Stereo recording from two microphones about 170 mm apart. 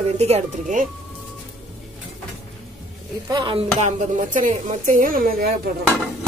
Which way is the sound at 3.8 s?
45° right (ahead or behind).